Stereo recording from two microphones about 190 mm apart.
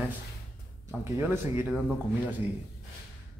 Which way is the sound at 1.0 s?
10° right (ahead or behind).